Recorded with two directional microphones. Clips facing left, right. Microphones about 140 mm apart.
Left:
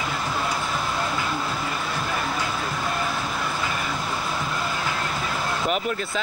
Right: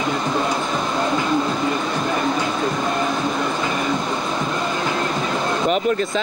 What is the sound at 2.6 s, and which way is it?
Music, 20° right (ahead or behind).